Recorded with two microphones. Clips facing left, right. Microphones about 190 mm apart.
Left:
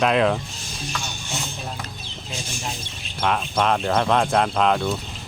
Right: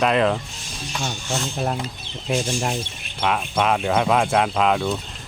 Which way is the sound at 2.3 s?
65° right (ahead or behind).